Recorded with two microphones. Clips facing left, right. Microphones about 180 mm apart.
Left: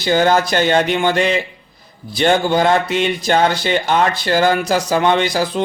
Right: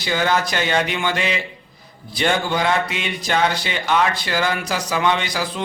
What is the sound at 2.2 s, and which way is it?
Speech, 35° left (ahead or behind).